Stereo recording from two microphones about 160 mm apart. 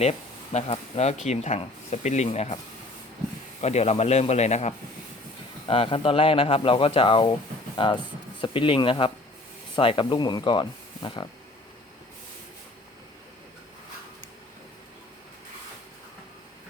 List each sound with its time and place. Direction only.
0.0 s speech: 45° left (ahead or behind)
3.6 s speech: 40° left (ahead or behind)